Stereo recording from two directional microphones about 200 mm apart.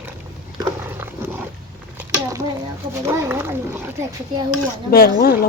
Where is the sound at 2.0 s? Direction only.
15° right (ahead or behind).